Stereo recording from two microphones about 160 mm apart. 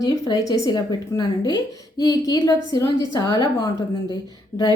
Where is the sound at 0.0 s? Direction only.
20° left (ahead or behind).